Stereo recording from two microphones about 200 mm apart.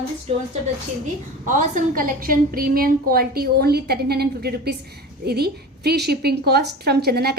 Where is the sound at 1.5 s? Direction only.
40° right (ahead or behind).